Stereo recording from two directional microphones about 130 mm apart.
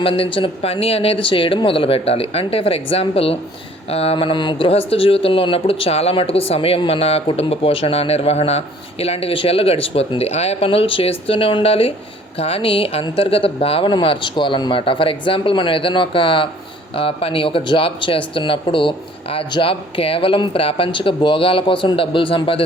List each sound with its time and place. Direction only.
0.0 s speech: 45° left (ahead or behind)